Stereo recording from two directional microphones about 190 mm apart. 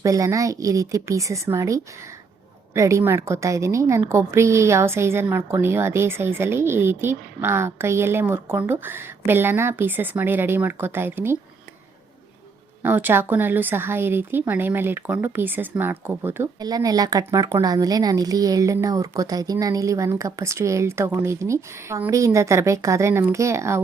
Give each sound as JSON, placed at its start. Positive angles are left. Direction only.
{"t": 0.0, "sound": "speech", "side_deg": -15}
{"t": 12.8, "sound": "speech", "side_deg": -10}